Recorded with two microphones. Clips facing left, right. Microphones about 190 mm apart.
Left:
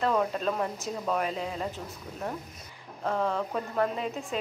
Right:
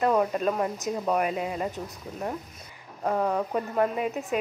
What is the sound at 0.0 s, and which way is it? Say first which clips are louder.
Speech: right 3 dB; 10° right (ahead or behind).